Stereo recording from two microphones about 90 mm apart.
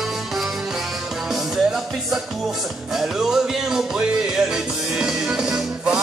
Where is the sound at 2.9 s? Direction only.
5° right (ahead or behind).